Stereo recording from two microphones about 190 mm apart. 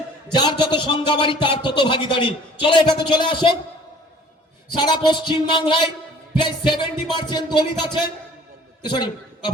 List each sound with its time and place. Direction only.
0.3 s a man's voice: 25° left (ahead or behind)
4.7 s a man's voice: 25° left (ahead or behind)
8.8 s a man's voice: 25° left (ahead or behind)